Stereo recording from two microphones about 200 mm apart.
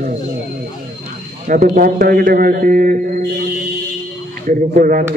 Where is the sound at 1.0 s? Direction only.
40° right (ahead or behind).